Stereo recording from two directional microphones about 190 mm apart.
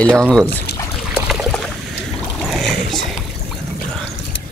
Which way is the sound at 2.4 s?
Centre (ahead or behind).